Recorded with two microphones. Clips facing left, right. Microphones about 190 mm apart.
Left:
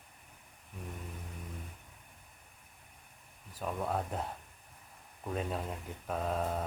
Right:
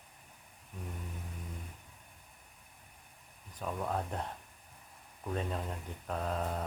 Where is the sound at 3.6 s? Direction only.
5° left (ahead or behind).